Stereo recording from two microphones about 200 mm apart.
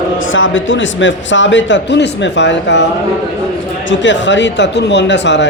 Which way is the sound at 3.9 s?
65° left (ahead or behind).